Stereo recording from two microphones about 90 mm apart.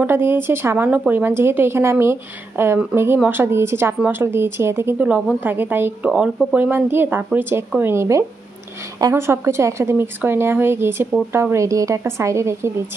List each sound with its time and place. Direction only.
0.0 s a woman's voice: 25° right (ahead or behind)
4.9 s a woman's voice: 15° right (ahead or behind)
6.0 s a woman's voice: 10° right (ahead or behind); by 12.7 s 30° right (ahead or behind)